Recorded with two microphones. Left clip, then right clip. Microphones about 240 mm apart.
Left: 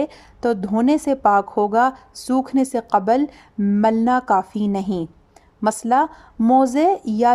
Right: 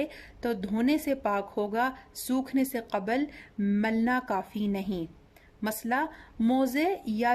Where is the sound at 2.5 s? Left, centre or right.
Centre.